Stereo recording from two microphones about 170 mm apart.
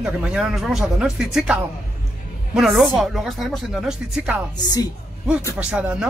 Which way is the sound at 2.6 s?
Centre (ahead or behind).